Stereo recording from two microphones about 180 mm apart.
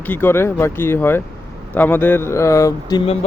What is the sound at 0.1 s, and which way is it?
Speech, 10° left (ahead or behind).